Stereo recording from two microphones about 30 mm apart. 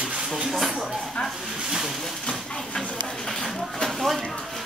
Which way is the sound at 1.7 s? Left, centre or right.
Centre.